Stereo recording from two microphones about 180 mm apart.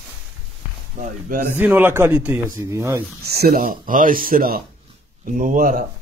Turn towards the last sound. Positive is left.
turn(degrees=-45)  # may be behind; listen again after turning